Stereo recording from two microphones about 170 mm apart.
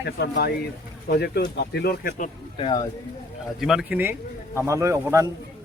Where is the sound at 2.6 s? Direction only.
30° left (ahead or behind).